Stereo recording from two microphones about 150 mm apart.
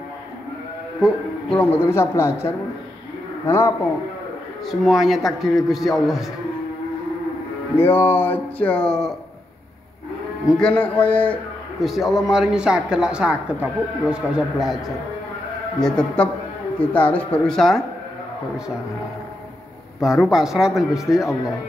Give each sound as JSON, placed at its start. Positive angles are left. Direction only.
{"t": 1.5, "sound": "speech", "side_deg": 10}
{"t": 4.6, "sound": "speech", "side_deg": 0}
{"t": 7.7, "sound": "speech", "side_deg": 15}
{"t": 10.6, "sound": "speech", "side_deg": 10}
{"t": 11.8, "sound": "speech", "side_deg": 0}
{"t": 15.8, "sound": "speech", "side_deg": 5}
{"t": 20.0, "sound": "speech", "side_deg": 0}